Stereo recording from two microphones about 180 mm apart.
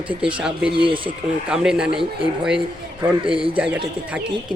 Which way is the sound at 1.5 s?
5° right (ahead or behind).